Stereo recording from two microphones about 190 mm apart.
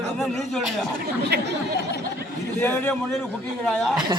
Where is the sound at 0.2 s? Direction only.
Centre (ahead or behind).